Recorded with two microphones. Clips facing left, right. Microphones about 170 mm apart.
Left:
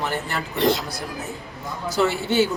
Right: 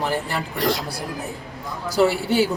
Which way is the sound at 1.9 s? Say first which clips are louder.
Right 2 dB; 35° right (ahead or behind).